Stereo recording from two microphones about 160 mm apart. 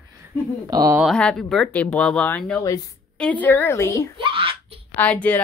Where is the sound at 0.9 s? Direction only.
Centre (ahead or behind); by 4.1 s 15° left (ahead or behind).